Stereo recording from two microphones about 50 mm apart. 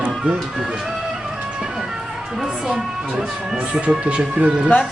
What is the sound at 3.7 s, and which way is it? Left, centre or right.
Speech, right.